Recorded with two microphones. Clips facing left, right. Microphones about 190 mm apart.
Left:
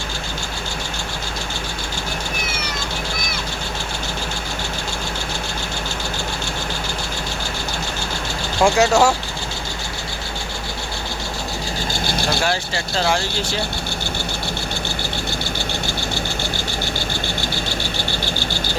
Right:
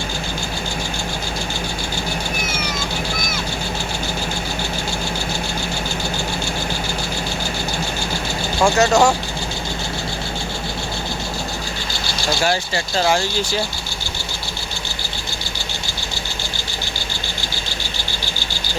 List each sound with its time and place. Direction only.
8.6 s speech: 10° left (ahead or behind)
12.0 s vehicle: 55° left (ahead or behind)